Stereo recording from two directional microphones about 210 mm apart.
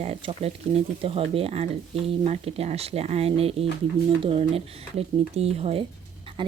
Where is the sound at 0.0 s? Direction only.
30° right (ahead or behind).